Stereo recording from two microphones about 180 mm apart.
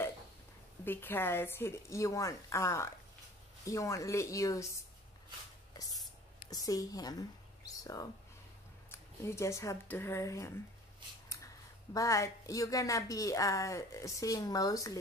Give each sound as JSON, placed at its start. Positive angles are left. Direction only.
{"t": 0.8, "sound": "a woman's voice", "side_deg": 10}
{"t": 6.5, "sound": "speech", "side_deg": 20}
{"t": 11.9, "sound": "a woman's voice", "side_deg": 20}